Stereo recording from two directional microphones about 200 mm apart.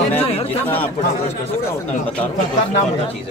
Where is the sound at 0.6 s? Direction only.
10° left (ahead or behind).